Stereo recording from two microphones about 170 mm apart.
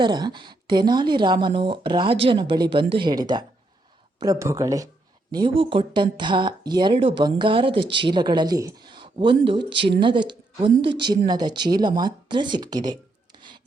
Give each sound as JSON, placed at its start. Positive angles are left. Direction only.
{"t": 0.0, "sound": "speech", "side_deg": -25}